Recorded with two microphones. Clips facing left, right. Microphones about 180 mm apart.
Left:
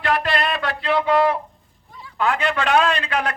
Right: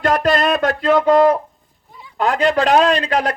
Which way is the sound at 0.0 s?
45° right (ahead or behind).